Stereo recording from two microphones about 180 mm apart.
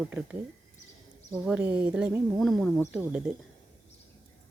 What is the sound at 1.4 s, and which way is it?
Speech, 5° right (ahead or behind).